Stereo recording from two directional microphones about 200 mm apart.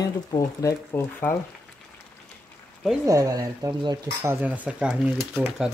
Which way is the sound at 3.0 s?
15° right (ahead or behind).